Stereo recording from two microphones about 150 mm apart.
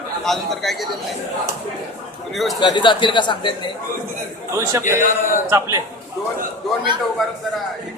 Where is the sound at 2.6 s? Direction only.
30° left (ahead or behind).